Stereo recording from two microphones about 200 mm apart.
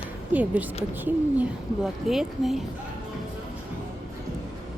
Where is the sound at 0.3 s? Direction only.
10° right (ahead or behind).